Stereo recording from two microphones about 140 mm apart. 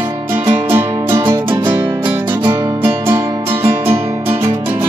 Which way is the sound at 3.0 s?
15° right (ahead or behind).